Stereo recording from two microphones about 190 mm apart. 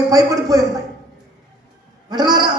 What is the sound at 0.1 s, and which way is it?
Speech, 20° right (ahead or behind).